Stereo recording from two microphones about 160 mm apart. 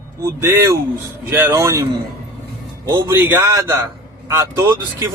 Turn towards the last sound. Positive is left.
turn(degrees=-20)  # may be behind; listen again after turning